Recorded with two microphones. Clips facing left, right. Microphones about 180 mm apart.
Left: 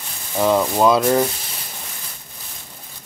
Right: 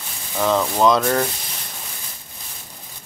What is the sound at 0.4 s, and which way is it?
Speech, 10° left (ahead or behind).